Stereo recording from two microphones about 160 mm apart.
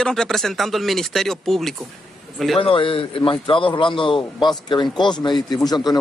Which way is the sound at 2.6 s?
35° left (ahead or behind).